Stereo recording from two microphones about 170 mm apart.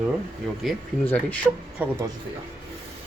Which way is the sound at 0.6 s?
Centre (ahead or behind).